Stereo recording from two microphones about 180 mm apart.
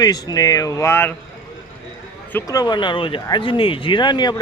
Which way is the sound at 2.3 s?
20° left (ahead or behind).